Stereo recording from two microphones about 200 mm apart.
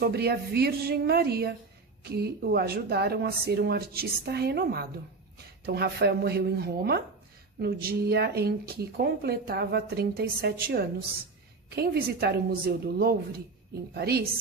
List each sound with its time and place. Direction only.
0.0 s speech: 50° right (ahead or behind)